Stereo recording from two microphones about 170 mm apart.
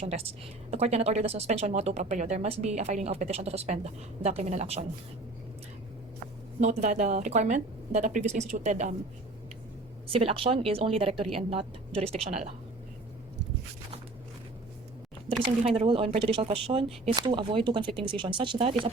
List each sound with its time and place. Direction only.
0.0 s a woman's voice: 35° right (ahead or behind)
6.6 s speech: 45° right (ahead or behind)
10.1 s a woman's voice: 35° right (ahead or behind)
15.6 s a woman's voice: 35° right (ahead or behind)